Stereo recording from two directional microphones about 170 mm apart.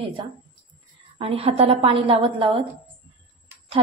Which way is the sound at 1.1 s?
35° right (ahead or behind).